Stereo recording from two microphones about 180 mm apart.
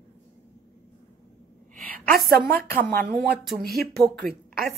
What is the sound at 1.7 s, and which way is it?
Speech, 55° right (ahead or behind).